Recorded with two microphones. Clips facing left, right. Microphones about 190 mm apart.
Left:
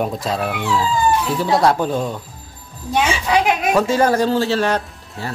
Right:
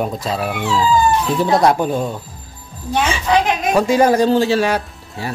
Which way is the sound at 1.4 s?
20° right (ahead or behind).